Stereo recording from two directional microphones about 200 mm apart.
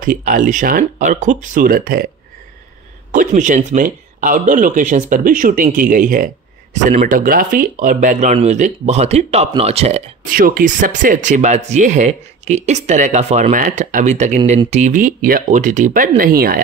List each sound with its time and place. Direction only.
0.0 s speech: 45° right (ahead or behind)
3.1 s speech: 40° right (ahead or behind)
10.3 s speech: 45° right (ahead or behind)